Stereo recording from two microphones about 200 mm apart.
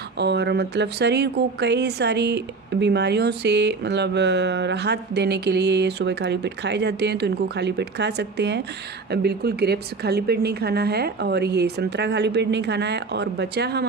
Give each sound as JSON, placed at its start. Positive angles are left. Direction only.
{"t": 0.2, "sound": "speech", "side_deg": -55}